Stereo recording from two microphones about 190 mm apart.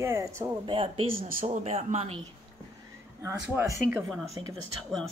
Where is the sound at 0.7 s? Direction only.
25° right (ahead or behind).